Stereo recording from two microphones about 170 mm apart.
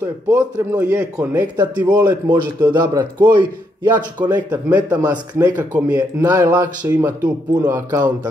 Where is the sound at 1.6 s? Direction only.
25° right (ahead or behind).